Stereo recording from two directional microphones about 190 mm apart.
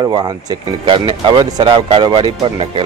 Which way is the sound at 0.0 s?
20° right (ahead or behind).